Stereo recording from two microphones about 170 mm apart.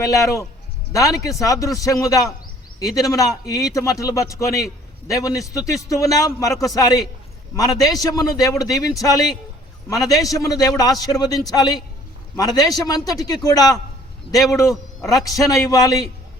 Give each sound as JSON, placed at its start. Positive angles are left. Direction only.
{"t": 0.0, "sound": "a man's voice", "side_deg": 20}